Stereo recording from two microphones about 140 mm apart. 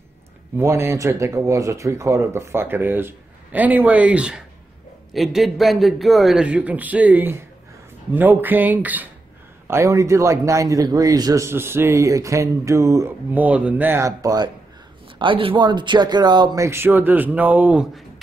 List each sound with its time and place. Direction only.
0.6 s a man's voice: 20° right (ahead or behind)
15.1 s a man's voice: 40° right (ahead or behind); by 17.8 s 10° right (ahead or behind)